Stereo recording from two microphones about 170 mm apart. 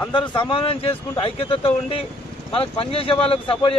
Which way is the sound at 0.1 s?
30° left (ahead or behind).